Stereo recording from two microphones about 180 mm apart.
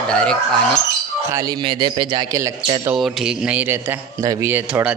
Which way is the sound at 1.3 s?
20° right (ahead or behind).